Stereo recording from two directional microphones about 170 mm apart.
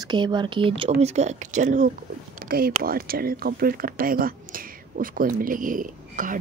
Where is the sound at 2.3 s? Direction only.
60° right (ahead or behind).